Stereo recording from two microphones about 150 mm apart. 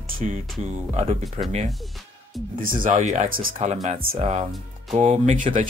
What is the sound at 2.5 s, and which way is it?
Speech, 65° right (ahead or behind).